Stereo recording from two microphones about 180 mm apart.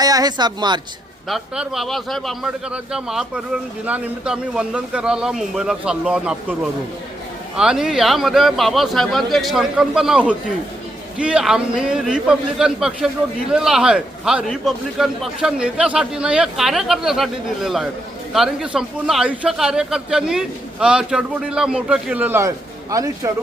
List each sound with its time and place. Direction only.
0.0 s speech: 20° right (ahead or behind)
1.3 s a man's voice: centre (ahead or behind); by 23.3 s 20° right (ahead or behind)